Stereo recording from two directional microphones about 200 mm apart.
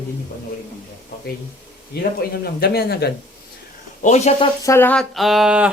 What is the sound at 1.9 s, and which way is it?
Speech, 55° left (ahead or behind).